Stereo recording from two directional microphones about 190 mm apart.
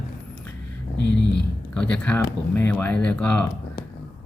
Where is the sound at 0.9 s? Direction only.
65° left (ahead or behind).